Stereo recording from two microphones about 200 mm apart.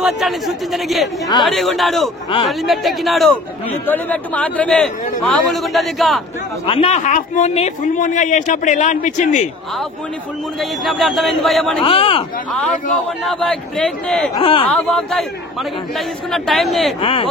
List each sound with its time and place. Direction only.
0.0 s speech: centre (ahead or behind)
6.6 s speech: 30° left (ahead or behind)
10.6 s speech: centre (ahead or behind)
11.8 s speech: 25° left (ahead or behind)
13.2 s speech: centre (ahead or behind)
14.3 s speech: 25° left (ahead or behind)
14.7 s speech: 5° left (ahead or behind)
16.3 s speech: centre (ahead or behind)
17.0 s speech: 25° left (ahead or behind)